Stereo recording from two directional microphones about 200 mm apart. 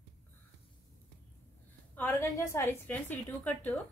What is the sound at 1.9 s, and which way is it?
A woman's voice, 10° left (ahead or behind).